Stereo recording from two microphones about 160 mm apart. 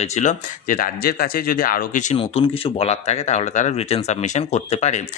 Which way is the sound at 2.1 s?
35° left (ahead or behind).